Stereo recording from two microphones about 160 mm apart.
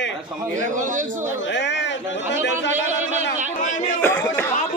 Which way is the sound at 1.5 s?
90° left.